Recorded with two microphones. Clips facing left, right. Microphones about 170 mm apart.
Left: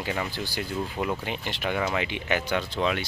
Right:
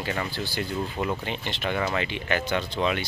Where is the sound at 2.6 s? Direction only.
Centre (ahead or behind).